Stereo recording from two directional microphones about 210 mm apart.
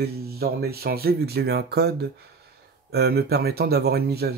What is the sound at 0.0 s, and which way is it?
Speech, 50° right (ahead or behind).